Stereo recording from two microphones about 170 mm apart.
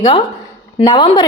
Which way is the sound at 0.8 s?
20° left (ahead or behind).